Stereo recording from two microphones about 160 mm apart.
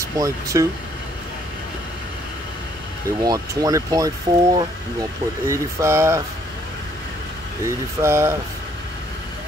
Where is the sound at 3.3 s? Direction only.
20° right (ahead or behind).